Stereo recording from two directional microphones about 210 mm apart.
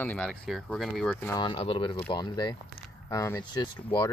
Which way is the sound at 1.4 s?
25° left (ahead or behind).